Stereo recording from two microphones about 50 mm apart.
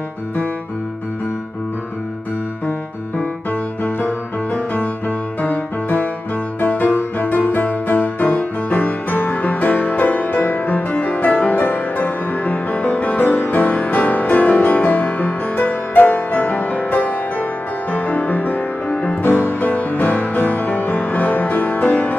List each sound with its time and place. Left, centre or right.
5.4 s music: left
19.2 s music: left